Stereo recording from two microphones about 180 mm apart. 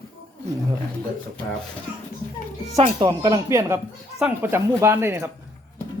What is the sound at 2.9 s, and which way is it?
Speech, 20° right (ahead or behind).